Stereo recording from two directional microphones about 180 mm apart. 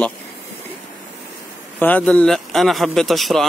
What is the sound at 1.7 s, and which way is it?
Speech, 10° left (ahead or behind).